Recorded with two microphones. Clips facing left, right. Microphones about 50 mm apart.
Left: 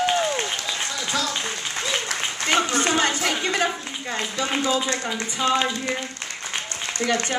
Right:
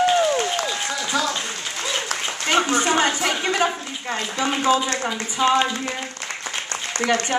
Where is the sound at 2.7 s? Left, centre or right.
Centre.